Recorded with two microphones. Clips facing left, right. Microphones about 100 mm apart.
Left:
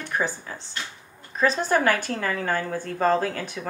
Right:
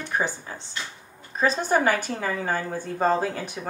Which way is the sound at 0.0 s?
20° right (ahead or behind).